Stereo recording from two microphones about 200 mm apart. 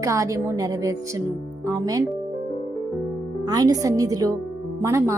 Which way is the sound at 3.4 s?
20° right (ahead or behind).